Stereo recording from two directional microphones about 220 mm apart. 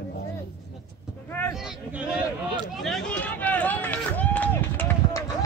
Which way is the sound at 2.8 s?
5° left (ahead or behind).